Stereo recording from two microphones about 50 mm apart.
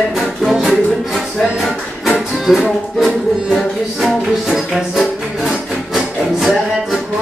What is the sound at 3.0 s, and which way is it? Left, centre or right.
Music, centre.